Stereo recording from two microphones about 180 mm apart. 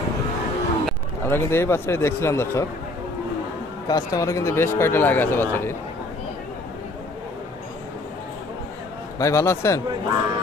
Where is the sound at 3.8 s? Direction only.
20° left (ahead or behind).